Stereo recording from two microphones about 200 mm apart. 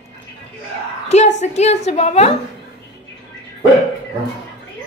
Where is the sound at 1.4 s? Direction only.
35° left (ahead or behind).